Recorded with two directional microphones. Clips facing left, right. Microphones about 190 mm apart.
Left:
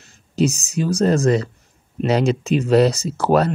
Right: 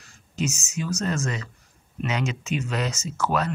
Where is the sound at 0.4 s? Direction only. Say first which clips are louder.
Left 9 dB; 35° left (ahead or behind).